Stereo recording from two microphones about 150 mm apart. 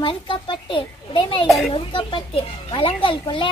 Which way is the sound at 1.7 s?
35° left (ahead or behind).